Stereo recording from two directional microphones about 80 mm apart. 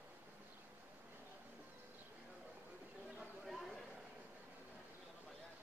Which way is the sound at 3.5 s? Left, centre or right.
Centre.